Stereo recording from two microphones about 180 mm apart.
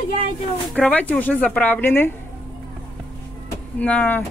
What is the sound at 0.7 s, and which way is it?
Speech, 5° left (ahead or behind).